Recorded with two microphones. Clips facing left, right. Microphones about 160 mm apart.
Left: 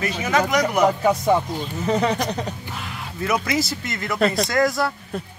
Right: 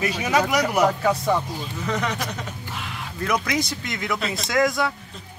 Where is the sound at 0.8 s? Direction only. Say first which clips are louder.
Left 3 dB; 20° left (ahead or behind).